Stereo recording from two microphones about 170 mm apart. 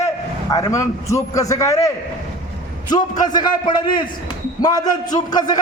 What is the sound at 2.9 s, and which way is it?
A man's voice, 25° left (ahead or behind).